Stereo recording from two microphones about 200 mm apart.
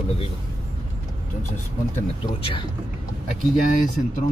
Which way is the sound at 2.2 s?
25° left (ahead or behind).